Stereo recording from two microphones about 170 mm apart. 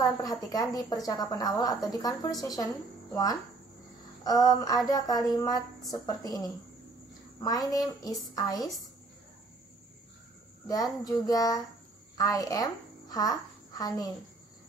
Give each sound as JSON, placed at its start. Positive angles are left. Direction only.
{"t": 0.0, "sound": "a woman's voice", "side_deg": 20}
{"t": 4.2, "sound": "a woman's voice", "side_deg": 20}
{"t": 10.7, "sound": "a woman's voice", "side_deg": 20}